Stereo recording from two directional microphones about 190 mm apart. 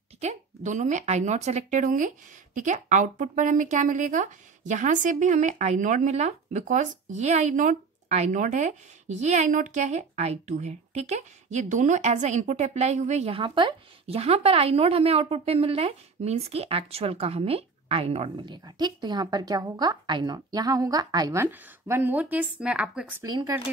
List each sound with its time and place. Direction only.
0.2 s a woman's voice: 40° right (ahead or behind); by 23.2 s 5° right (ahead or behind)
23.2 s speech: 20° right (ahead or behind)